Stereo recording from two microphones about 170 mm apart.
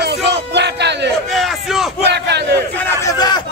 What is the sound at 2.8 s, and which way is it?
Speech, 15° left (ahead or behind).